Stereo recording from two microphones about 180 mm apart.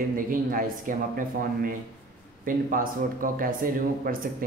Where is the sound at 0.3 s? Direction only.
50° right (ahead or behind).